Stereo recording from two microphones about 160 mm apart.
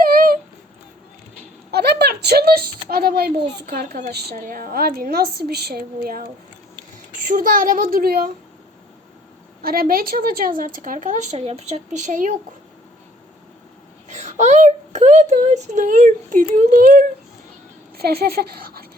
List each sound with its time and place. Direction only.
0.0 s a sound: 60° right (ahead or behind)
1.7 s a sound: 85° right
2.9 s a woman's voice: 70° right (ahead or behind)
9.6 s speech: 65° right (ahead or behind)
14.1 s speech: 45° right (ahead or behind)
17.9 s a woman's voice: 75° right (ahead or behind)